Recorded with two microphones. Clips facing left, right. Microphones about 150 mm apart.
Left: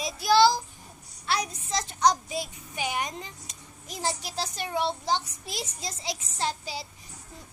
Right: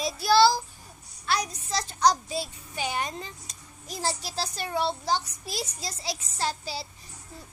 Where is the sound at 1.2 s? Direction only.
30° left (ahead or behind).